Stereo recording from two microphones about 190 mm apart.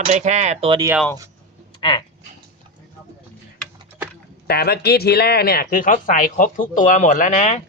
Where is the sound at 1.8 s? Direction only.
25° left (ahead or behind).